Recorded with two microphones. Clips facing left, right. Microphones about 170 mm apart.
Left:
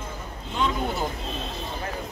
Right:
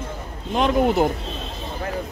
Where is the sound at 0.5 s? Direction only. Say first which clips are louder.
Right 9 dB; 60° right (ahead or behind).